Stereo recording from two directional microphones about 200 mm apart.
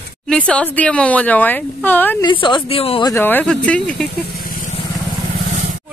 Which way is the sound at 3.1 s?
10° left (ahead or behind).